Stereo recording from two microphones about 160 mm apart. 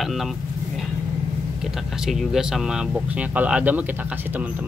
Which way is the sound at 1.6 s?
5° right (ahead or behind).